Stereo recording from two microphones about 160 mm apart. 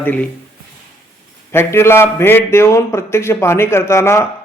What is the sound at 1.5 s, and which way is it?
A man's voice, 15° left (ahead or behind).